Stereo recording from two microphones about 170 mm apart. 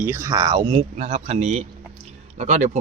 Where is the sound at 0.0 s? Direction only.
15° right (ahead or behind).